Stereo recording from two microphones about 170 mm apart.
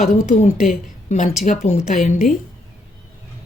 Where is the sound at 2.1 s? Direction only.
50° left (ahead or behind).